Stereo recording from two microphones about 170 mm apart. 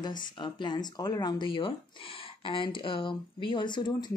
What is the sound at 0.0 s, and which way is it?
Speech, 25° left (ahead or behind).